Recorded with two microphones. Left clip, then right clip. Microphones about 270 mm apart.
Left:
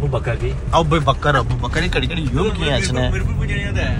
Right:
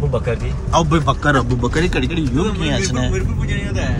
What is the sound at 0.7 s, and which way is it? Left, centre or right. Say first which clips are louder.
A man's voice: even; centre.